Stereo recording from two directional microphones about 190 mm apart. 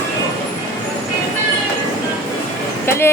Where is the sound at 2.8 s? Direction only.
15° left (ahead or behind).